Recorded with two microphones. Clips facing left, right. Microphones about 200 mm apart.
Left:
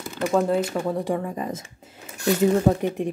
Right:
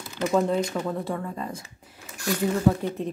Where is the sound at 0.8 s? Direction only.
15° left (ahead or behind).